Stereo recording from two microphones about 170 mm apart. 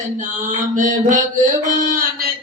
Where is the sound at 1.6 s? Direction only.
55° right (ahead or behind).